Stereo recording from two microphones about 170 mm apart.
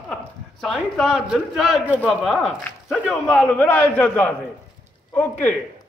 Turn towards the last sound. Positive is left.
turn(degrees=10)  # may be behind; listen again after turning